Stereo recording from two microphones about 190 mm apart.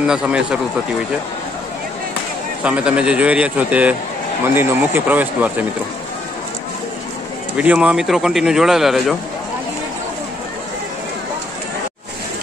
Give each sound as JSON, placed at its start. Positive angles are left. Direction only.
{"t": 0.0, "sound": "speech", "side_deg": -5}
{"t": 2.6, "sound": "speech", "side_deg": -5}
{"t": 7.5, "sound": "speech", "side_deg": -5}